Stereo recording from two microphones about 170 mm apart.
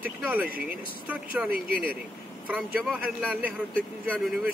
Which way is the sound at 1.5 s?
60° right (ahead or behind).